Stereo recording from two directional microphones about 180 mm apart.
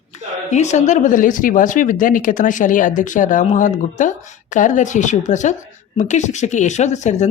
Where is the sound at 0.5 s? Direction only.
40° left (ahead or behind).